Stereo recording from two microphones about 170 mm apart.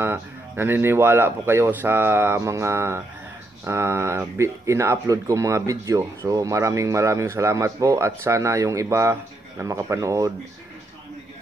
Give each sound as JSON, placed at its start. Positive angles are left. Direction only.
{"t": 0.0, "sound": "speech", "side_deg": -15}